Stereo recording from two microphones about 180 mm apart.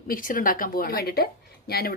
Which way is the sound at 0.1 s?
50° left (ahead or behind).